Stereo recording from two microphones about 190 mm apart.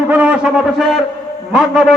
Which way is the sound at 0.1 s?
5° right (ahead or behind).